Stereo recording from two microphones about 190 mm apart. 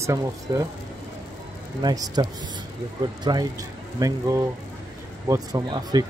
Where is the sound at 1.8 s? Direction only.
20° right (ahead or behind).